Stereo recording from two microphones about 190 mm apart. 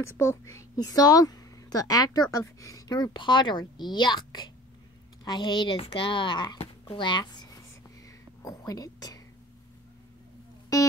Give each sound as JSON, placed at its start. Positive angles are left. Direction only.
{"t": 0.6, "sound": "speech", "side_deg": 20}
{"t": 8.5, "sound": "speech", "side_deg": 20}
{"t": 10.7, "sound": "music", "side_deg": 20}